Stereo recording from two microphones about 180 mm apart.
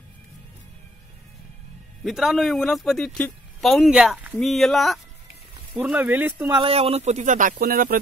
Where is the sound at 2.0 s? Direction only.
Centre (ahead or behind).